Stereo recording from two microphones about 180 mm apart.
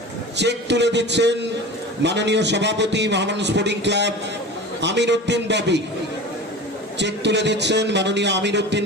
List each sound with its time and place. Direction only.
0.3 s a man's voice: 70° right (ahead or behind)
7.0 s a man's voice: 75° right (ahead or behind)